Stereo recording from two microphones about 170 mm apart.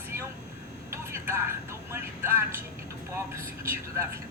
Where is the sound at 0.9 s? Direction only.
15° right (ahead or behind).